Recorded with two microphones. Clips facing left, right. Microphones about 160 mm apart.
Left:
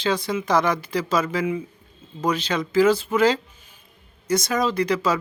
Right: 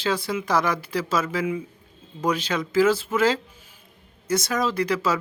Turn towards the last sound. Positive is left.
turn(degrees=-5)  # may be behind; listen again after turning